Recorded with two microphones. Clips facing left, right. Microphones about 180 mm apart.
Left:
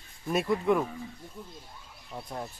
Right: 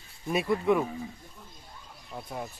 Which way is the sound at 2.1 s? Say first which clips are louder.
Even; 5° right (ahead or behind).